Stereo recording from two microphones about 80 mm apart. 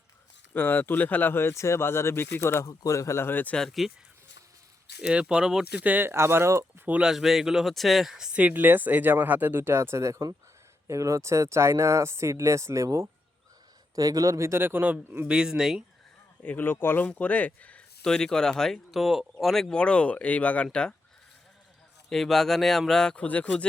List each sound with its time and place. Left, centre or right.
0.5 s speech: left
3.7 s speech: centre
4.9 s speech: centre
5.8 s speech: right
6.8 s speech: centre
7.1 s speech: centre
8.4 s speech: right
13.9 s speech: right
15.3 s speech: centre
16.4 s speech: left
18.0 s speech: centre
22.1 s speech: centre